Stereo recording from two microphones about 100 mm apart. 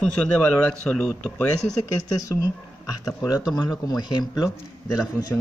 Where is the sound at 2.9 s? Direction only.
35° left (ahead or behind).